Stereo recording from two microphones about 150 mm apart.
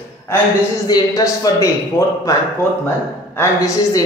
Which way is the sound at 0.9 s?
25° left (ahead or behind).